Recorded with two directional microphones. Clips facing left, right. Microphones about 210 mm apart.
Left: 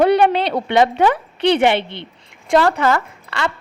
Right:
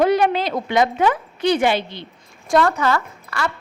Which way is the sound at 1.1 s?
65° left (ahead or behind).